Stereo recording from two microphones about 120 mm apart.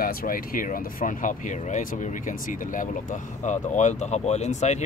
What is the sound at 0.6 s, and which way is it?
Speech, 90° left.